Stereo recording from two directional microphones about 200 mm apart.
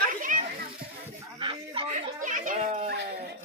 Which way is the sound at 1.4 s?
25° right (ahead or behind).